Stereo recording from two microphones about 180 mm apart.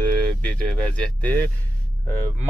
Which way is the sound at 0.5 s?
10° left (ahead or behind).